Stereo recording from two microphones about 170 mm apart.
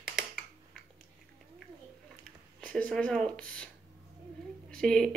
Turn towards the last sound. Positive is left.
turn(degrees=5)  # may be behind; listen again after turning